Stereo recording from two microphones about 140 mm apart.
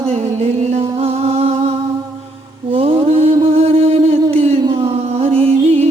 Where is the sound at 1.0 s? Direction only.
45° right (ahead or behind).